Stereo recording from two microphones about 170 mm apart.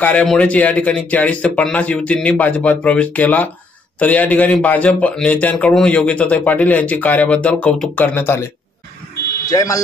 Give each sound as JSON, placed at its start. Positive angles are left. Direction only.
{"t": 0.0, "sound": "a man's voice", "side_deg": 10}
{"t": 9.5, "sound": "speech", "side_deg": 20}